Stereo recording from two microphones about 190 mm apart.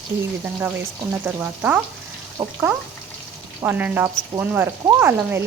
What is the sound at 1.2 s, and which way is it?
Speech, 10° right (ahead or behind).